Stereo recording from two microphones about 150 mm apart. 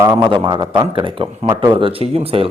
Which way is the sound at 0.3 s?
35° right (ahead or behind).